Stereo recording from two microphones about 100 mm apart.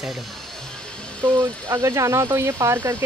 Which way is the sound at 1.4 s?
30° right (ahead or behind).